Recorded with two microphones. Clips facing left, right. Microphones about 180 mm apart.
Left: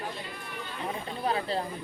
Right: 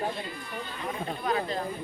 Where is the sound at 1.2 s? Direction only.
30° left (ahead or behind).